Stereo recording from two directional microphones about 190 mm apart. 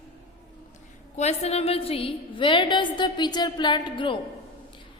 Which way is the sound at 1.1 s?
35° left (ahead or behind).